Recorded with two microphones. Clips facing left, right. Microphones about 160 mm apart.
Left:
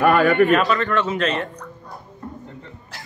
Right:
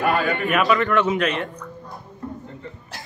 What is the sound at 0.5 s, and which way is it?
Speech, 20° right (ahead or behind).